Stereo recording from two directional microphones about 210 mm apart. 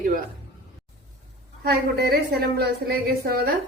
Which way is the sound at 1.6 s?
45° right (ahead or behind).